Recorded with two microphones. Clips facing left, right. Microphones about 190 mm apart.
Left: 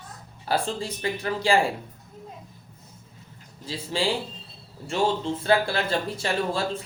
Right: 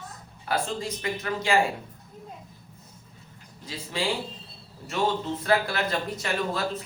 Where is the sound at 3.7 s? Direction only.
30° left (ahead or behind).